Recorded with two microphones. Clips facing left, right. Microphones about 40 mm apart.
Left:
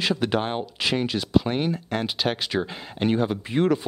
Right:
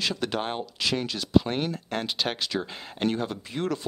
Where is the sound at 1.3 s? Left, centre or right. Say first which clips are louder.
Even; centre.